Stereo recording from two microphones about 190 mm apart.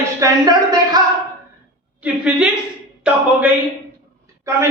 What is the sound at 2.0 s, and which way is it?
Speech, 5° right (ahead or behind).